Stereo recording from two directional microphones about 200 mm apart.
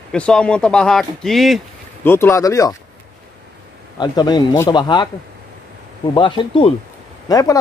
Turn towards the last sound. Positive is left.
turn(degrees=20)  # may be behind; listen again after turning